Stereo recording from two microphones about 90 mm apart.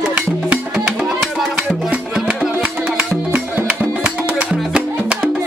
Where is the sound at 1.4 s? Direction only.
15° right (ahead or behind).